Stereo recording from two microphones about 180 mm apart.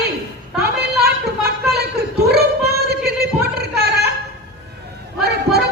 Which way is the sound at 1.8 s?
65° right (ahead or behind).